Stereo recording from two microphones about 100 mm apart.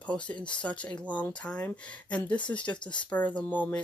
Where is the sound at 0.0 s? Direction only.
15° left (ahead or behind).